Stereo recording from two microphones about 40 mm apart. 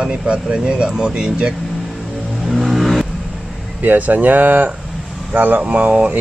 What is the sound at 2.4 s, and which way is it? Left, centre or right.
Vehicle, centre.